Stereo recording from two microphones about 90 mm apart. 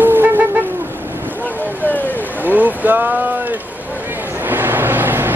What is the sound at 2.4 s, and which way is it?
Boat, 20° right (ahead or behind).